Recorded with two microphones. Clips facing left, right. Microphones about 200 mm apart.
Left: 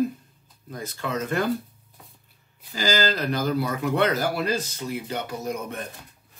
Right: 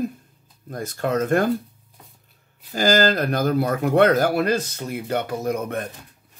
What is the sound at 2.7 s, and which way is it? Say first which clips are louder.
Speech: right 6 dB; 50° right (ahead or behind).